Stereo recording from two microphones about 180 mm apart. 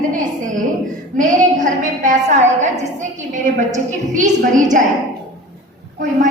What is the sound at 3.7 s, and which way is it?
A woman's voice, 45° right (ahead or behind).